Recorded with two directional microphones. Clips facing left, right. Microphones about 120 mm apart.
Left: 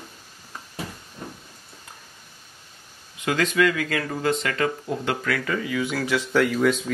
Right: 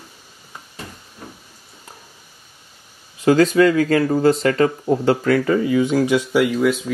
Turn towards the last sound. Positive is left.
turn(degrees=-5)  # may be behind; listen again after turning